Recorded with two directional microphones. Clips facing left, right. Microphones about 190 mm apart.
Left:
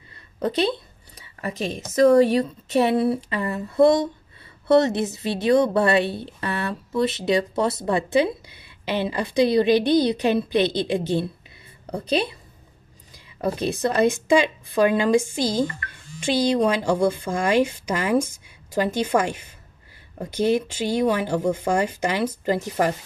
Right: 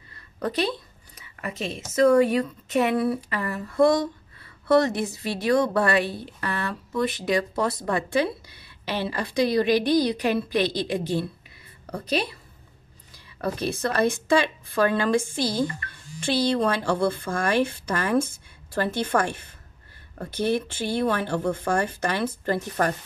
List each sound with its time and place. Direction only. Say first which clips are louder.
0.4 s a woman's voice: left 4 dB; 25° left (ahead or behind)
1.2 s a woman's voice: left 3 dB; 40° left (ahead or behind); by 22.9 s 10° left (ahead or behind)